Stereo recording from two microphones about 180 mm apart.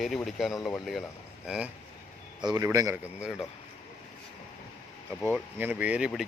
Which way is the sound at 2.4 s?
20° right (ahead or behind).